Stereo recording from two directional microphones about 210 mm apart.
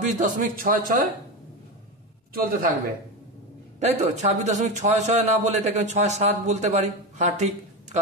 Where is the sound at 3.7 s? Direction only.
35° right (ahead or behind).